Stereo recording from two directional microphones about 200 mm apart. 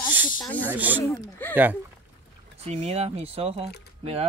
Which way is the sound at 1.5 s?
10° right (ahead or behind).